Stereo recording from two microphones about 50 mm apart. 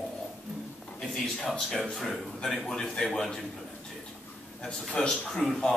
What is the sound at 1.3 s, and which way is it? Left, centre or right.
Speech, centre.